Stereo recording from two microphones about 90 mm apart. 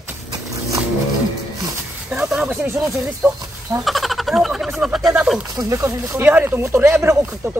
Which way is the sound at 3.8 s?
Centre (ahead or behind).